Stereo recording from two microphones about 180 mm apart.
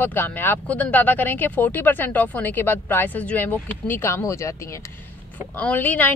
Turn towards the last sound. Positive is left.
turn(degrees=10)  # may be behind; listen again after turning